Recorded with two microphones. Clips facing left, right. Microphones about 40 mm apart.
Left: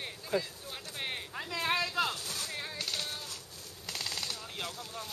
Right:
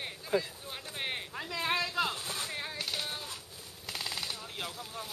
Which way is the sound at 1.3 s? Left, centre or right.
Centre.